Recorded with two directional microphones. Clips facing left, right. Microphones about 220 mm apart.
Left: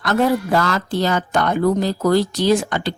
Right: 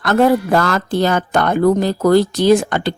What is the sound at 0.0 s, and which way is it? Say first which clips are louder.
Speech: right 4 dB; 55° right (ahead or behind).